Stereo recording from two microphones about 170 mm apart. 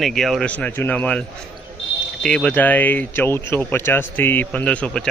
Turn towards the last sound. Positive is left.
turn(degrees=5)  # may be behind; listen again after turning